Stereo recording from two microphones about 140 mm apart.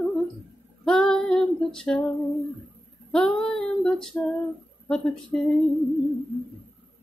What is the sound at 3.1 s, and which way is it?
Female singing, 5° left (ahead or behind).